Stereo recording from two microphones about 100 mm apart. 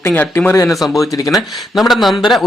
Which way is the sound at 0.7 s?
Centre (ahead or behind).